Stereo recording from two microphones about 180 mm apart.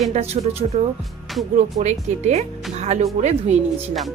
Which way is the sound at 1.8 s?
40° right (ahead or behind).